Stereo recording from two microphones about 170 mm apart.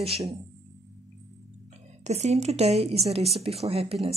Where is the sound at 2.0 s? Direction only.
40° right (ahead or behind).